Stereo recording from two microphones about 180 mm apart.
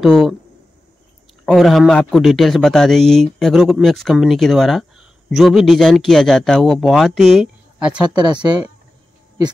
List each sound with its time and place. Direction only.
0.0 s a man's voice: centre (ahead or behind)
1.4 s a man's voice: centre (ahead or behind)
8.2 s speech: 25° right (ahead or behind)